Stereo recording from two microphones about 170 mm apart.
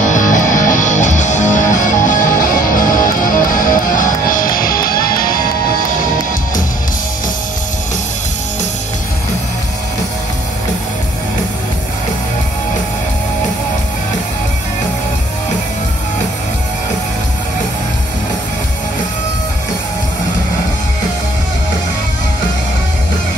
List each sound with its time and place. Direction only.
0.0 s music: 45° left (ahead or behind)